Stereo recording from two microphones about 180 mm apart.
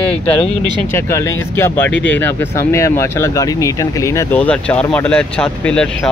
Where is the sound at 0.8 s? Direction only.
15° left (ahead or behind).